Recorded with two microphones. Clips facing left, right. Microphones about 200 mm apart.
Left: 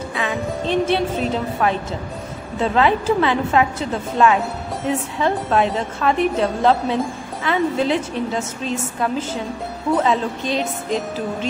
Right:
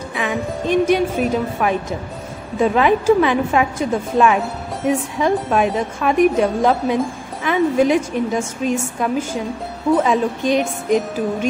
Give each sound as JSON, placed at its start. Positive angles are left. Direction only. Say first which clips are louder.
{"t": 0.1, "sound": "a woman's voice", "louder": "right 2 dB", "side_deg": -20}